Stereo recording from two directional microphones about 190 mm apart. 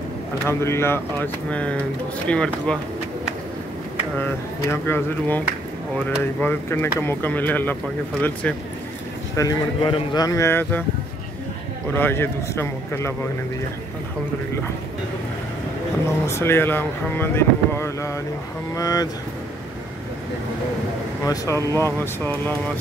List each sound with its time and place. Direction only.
0.5 s speech: 15° left (ahead or behind)
4.6 s speech: 10° left (ahead or behind)
9.4 s a man's voice: 20° left (ahead or behind)
11.9 s speech: 10° left (ahead or behind)
16.3 s a man's voice: 15° left (ahead or behind)
21.2 s speech: 15° left (ahead or behind)